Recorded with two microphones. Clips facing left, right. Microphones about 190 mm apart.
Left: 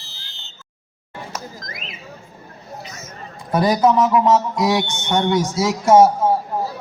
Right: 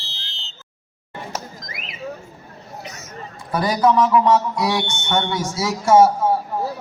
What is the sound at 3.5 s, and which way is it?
A man's voice, 20° left (ahead or behind).